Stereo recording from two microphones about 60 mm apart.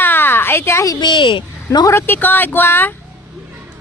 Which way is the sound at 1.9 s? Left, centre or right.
Left.